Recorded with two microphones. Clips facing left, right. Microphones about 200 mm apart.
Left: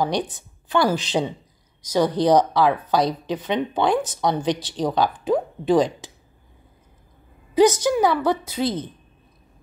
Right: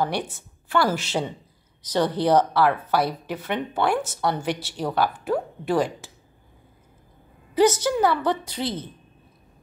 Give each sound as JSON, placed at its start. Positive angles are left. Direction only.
{"t": 0.0, "sound": "a woman's voice", "side_deg": 15}
{"t": 7.5, "sound": "a woman's voice", "side_deg": 15}